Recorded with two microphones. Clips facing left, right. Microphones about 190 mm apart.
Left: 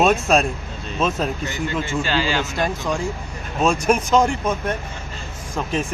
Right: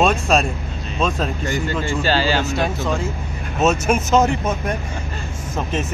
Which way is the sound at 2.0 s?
35° right (ahead or behind).